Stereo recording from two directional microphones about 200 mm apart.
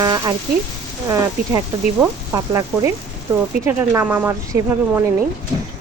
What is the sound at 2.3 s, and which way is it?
Speech, 15° right (ahead or behind).